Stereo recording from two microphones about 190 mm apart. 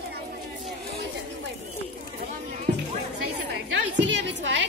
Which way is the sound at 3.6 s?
75° right (ahead or behind).